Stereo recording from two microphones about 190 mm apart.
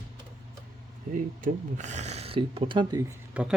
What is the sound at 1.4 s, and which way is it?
Speech, 40° right (ahead or behind).